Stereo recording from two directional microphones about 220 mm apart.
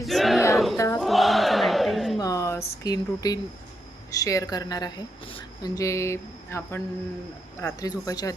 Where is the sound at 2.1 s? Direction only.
15° left (ahead or behind).